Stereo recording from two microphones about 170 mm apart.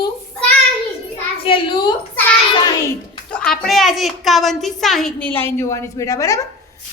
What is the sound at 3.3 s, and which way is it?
A woman's voice, 5° left (ahead or behind).